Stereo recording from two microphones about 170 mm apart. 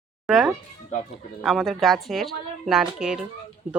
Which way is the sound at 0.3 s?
Centre (ahead or behind).